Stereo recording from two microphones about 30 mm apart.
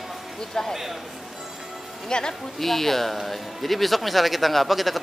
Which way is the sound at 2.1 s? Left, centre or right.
Left.